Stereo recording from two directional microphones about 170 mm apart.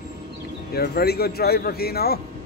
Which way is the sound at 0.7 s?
70° left (ahead or behind).